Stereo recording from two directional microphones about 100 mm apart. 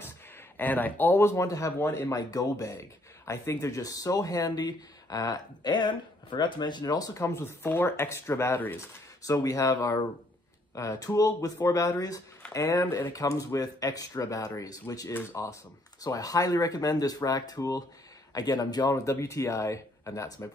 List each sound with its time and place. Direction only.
0.6 s speech: 15° left (ahead or behind); by 11.9 s 35° left (ahead or behind)
13.1 s speech: 35° left (ahead or behind)